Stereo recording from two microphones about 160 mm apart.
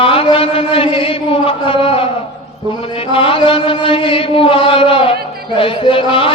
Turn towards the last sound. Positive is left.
turn(degrees=35)  # may be behind; listen again after turning